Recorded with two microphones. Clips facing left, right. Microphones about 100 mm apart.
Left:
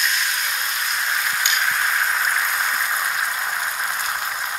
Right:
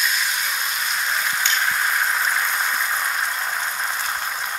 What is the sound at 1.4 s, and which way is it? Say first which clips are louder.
Frying: even; 10° left (ahead or behind).